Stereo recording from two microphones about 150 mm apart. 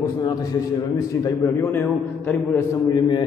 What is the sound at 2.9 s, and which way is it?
Speech, 30° left (ahead or behind).